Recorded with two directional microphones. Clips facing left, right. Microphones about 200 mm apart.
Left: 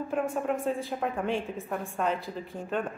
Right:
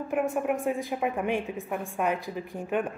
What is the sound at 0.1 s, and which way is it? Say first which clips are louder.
A woman's voice: right 3 dB; 15° right (ahead or behind).